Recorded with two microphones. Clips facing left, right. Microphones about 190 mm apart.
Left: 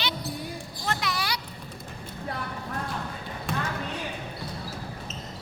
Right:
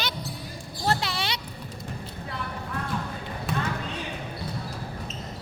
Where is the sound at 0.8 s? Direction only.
30° right (ahead or behind).